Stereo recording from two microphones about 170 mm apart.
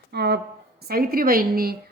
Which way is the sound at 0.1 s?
75° right (ahead or behind).